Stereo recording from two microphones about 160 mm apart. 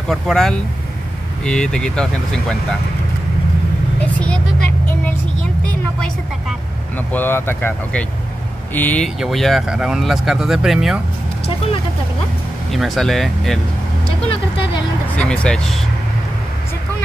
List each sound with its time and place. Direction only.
0.1 s speech: 5° left (ahead or behind)
4.0 s speech: 5° left (ahead or behind)
7.1 s speech: 10° left (ahead or behind)
12.7 s speech: centre (ahead or behind)
14.0 s speech: 35° left (ahead or behind)
15.1 s speech: 5° left (ahead or behind)